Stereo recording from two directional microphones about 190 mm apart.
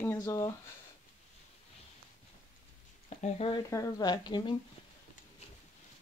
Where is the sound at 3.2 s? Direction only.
30° left (ahead or behind).